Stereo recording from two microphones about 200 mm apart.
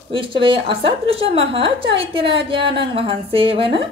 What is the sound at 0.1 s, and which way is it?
A woman's voice, 25° right (ahead or behind).